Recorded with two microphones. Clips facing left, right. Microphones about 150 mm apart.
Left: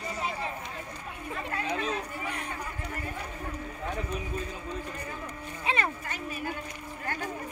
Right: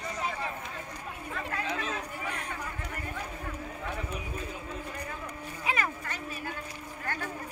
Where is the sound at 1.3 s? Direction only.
20° left (ahead or behind).